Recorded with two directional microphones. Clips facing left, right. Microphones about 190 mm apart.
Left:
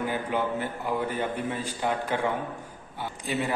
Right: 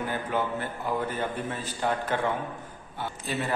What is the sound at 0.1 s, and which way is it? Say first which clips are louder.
A man's voice: left 1 dB; 15° left (ahead or behind).